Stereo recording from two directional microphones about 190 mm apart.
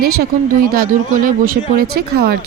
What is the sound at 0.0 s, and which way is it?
Speech, 55° right (ahead or behind).